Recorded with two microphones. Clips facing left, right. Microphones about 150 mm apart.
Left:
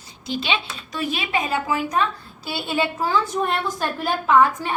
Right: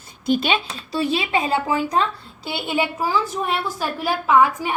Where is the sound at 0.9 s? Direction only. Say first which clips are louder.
Right 4 dB; 30° right (ahead or behind).